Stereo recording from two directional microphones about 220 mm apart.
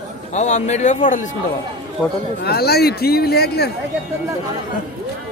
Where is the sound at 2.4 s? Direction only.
45° left (ahead or behind).